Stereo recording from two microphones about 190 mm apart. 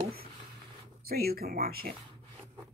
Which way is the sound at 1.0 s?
55° right (ahead or behind).